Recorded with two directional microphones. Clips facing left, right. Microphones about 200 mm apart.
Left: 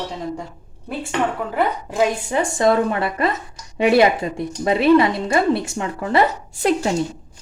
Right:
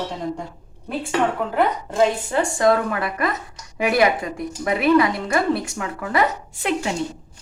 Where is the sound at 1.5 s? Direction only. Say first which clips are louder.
Right 1 dB; 5° left (ahead or behind).